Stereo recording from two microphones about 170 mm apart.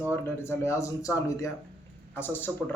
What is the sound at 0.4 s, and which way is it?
Speech, 15° left (ahead or behind).